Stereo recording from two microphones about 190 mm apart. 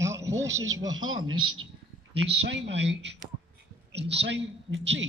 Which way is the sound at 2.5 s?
65° right (ahead or behind).